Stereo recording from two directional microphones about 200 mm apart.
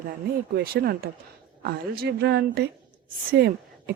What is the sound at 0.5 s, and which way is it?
A woman's voice, 50° right (ahead or behind).